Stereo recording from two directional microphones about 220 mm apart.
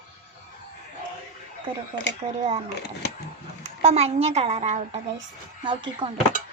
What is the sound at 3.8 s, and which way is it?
Speech, 30° right (ahead or behind).